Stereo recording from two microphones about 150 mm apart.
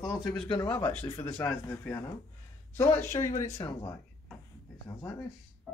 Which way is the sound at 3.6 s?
25° left (ahead or behind).